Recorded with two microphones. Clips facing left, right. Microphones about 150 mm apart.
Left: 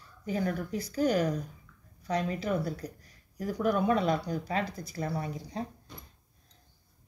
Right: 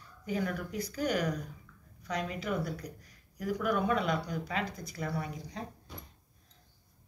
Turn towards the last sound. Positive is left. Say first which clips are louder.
# left 3 dB
turn(degrees=30)  # may be behind; listen again after turning